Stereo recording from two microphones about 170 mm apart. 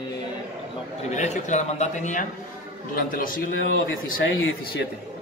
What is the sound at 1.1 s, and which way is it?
A man's voice, 45° left (ahead or behind).